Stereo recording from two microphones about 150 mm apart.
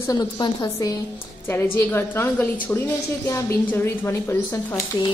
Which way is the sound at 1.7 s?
15° left (ahead or behind).